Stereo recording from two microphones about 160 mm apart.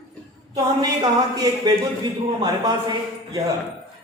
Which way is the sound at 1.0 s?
25° right (ahead or behind).